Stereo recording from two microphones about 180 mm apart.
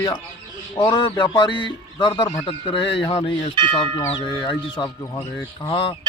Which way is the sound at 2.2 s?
15° left (ahead or behind).